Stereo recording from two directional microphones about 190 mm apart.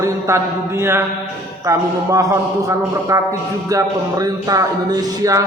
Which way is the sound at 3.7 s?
20° right (ahead or behind).